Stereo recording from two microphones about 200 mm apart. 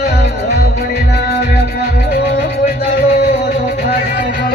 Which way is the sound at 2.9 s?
50° left (ahead or behind).